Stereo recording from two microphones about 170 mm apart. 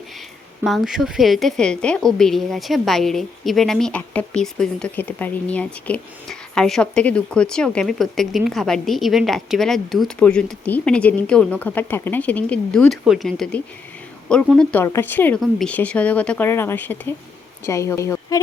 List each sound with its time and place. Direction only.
0.6 s a woman's voice: centre (ahead or behind); by 18.3 s 15° left (ahead or behind)